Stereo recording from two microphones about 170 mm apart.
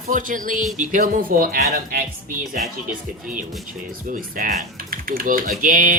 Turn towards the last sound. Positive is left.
turn(degrees=-55)  # may be behind; listen again after turning